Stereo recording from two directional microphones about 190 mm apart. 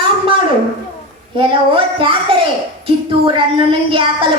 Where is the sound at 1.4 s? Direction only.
30° right (ahead or behind).